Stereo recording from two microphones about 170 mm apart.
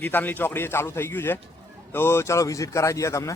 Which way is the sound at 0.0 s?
10° left (ahead or behind).